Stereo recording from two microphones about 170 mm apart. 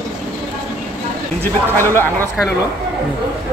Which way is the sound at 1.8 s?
15° left (ahead or behind).